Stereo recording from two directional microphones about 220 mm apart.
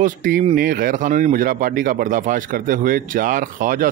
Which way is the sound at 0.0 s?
35° right (ahead or behind).